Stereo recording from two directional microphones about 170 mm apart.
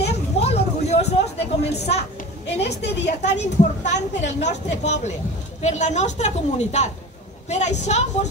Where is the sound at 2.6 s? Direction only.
85° left.